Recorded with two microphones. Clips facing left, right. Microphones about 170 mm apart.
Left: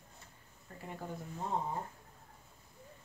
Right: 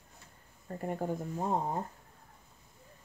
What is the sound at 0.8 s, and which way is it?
Speech, 45° right (ahead or behind).